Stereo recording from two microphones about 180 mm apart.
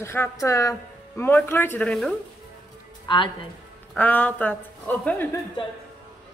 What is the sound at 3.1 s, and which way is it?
Speech, 25° left (ahead or behind).